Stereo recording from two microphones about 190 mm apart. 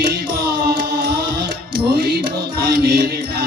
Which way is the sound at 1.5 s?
50° right (ahead or behind).